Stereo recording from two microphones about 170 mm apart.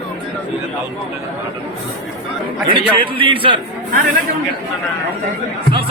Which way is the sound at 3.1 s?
30° right (ahead or behind).